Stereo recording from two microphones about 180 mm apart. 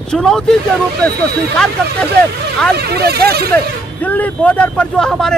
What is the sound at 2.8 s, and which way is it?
Speech, 60° right (ahead or behind).